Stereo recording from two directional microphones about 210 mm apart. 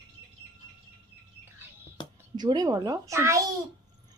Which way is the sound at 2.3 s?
20° right (ahead or behind).